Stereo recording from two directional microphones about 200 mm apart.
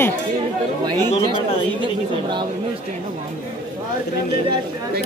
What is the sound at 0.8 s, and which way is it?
Speech, 20° right (ahead or behind).